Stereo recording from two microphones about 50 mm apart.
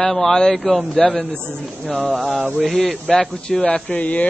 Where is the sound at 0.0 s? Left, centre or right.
Centre.